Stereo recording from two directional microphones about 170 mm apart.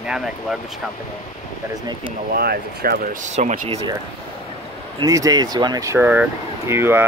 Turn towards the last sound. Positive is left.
turn(degrees=-15)  # may be behind; listen again after turning